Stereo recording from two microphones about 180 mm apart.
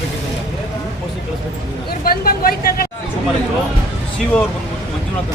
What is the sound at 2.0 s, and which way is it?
Speech, 55° left (ahead or behind).